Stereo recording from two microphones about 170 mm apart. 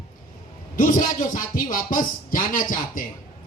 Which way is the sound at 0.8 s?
50° left (ahead or behind).